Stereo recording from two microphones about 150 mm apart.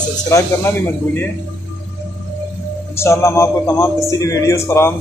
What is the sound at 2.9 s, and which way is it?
Speech, 20° left (ahead or behind).